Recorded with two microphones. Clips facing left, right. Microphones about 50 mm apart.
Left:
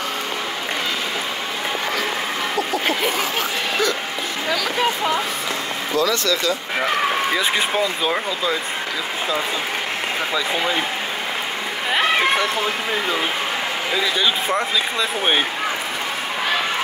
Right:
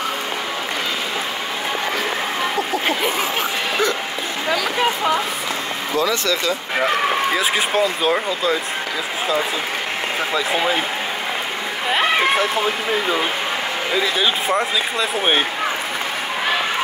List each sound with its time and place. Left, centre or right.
4.5 s speech: centre
5.9 s speech: right
7.3 s speech: centre
10.3 s speech: centre
11.9 s speech: centre